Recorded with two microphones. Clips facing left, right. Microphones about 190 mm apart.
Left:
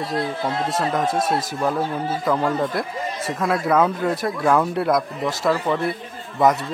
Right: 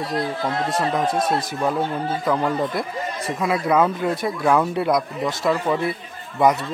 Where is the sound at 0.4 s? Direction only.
25° left (ahead or behind).